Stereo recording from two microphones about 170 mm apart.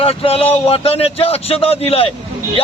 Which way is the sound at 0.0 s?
35° left (ahead or behind).